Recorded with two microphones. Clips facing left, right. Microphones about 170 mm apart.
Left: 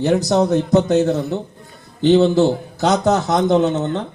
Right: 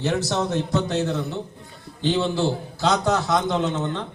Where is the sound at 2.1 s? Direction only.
40° left (ahead or behind).